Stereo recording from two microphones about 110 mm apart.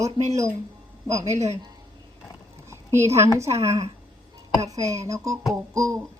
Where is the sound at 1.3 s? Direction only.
90° right.